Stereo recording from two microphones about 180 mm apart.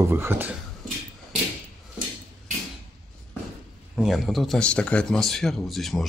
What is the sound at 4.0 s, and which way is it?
Speech, centre (ahead or behind).